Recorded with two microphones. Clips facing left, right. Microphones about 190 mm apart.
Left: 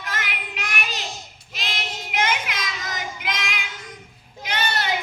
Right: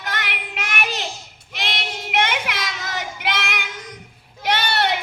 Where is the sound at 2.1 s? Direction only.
65° right (ahead or behind).